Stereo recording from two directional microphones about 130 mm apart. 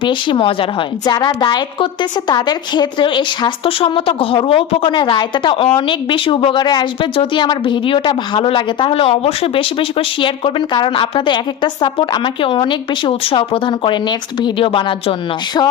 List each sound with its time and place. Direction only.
0.0 s speech: 40° left (ahead or behind)